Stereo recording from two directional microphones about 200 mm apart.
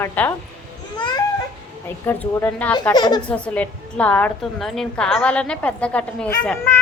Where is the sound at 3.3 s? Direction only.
5° left (ahead or behind).